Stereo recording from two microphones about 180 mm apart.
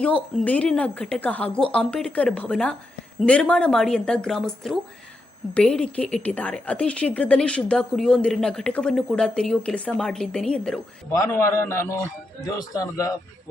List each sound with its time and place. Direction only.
0.0 s a woman's voice: 5° left (ahead or behind)
11.1 s a man's voice: 15° left (ahead or behind)